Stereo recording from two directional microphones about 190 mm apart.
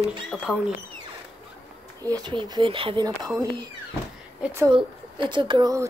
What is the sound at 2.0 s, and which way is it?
Speech, 20° right (ahead or behind).